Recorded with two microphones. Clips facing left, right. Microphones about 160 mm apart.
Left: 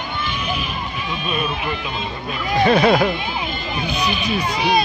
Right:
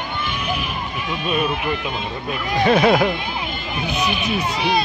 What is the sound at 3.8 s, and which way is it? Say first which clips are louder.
Speech: right 1 dB; 60° right (ahead or behind).